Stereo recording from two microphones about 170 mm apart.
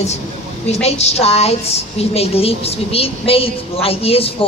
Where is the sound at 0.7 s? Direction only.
40° left (ahead or behind).